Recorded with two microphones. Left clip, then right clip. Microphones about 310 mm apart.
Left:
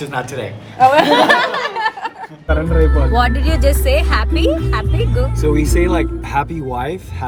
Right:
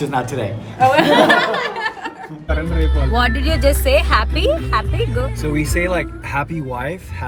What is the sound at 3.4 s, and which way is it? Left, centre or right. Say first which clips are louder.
Speech: even; centre.